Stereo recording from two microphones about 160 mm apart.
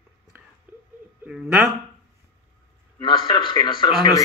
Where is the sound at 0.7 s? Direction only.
10° right (ahead or behind).